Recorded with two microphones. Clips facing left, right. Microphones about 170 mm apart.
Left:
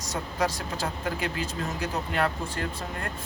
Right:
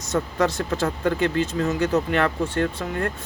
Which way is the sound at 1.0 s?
70° right (ahead or behind).